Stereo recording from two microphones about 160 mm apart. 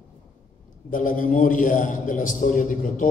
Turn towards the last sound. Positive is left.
turn(degrees=55)  # may be behind; listen again after turning